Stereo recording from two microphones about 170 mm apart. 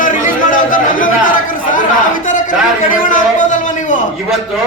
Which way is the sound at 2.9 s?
50° left (ahead or behind).